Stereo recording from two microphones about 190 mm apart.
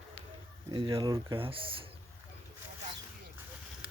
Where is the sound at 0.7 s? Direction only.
25° right (ahead or behind).